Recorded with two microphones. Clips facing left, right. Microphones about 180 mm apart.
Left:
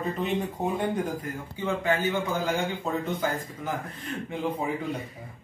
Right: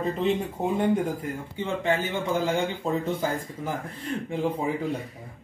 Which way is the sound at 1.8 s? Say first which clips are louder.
Right 1 dB; 25° right (ahead or behind).